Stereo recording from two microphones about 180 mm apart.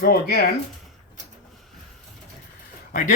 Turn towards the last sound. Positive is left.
turn(degrees=45)  # may be behind; listen again after turning